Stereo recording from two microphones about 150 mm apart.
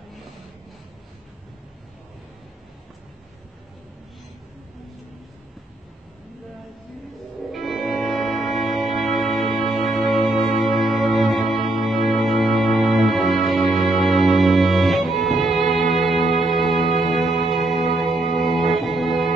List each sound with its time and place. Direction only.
7.5 s music: centre (ahead or behind)
16.3 s music: 35° right (ahead or behind)
18.6 s music: centre (ahead or behind)